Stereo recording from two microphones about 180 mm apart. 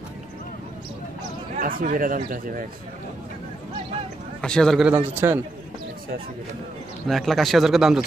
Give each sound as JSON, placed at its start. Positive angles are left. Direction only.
{"t": 1.6, "sound": "speech", "side_deg": -50}
{"t": 4.4, "sound": "a man's voice", "side_deg": 5}
{"t": 7.1, "sound": "a man's voice", "side_deg": 0}